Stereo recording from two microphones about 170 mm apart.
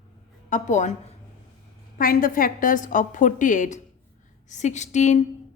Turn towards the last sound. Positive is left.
turn(degrees=45)  # may be behind; listen again after turning